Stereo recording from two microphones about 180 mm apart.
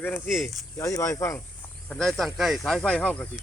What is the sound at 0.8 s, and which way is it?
Speech, 15° left (ahead or behind).